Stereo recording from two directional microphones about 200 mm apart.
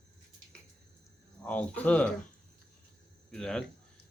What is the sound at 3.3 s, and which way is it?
Speech, 5° left (ahead or behind).